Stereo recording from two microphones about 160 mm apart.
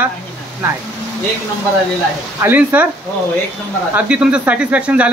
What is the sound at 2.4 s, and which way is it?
Speech, 10° right (ahead or behind).